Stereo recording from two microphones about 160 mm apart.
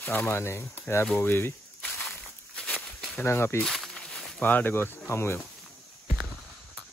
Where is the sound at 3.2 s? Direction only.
15° left (ahead or behind).